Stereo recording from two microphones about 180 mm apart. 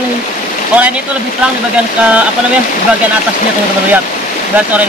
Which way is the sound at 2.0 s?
5° right (ahead or behind).